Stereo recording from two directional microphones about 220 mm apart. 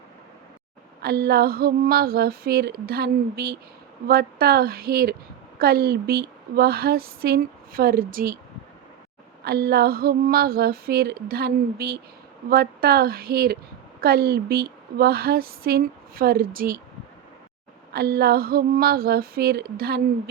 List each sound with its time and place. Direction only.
1.0 s a woman's voice: 45° right (ahead or behind)
9.4 s a woman's voice: 45° right (ahead or behind)
17.9 s a woman's voice: 45° right (ahead or behind)